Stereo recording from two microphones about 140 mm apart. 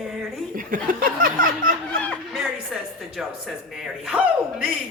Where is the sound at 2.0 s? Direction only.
Centre (ahead or behind).